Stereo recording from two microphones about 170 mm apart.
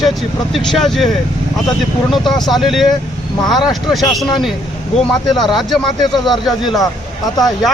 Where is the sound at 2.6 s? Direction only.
Centre (ahead or behind).